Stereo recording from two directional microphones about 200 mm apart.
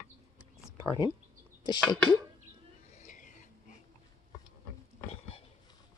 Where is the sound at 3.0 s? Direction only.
40° left (ahead or behind).